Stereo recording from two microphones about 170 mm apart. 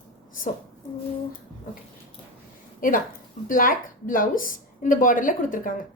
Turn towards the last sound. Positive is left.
turn(degrees=55)  # may be behind; listen again after turning